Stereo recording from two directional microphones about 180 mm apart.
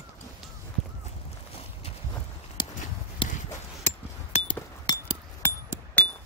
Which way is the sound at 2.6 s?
25° left (ahead or behind).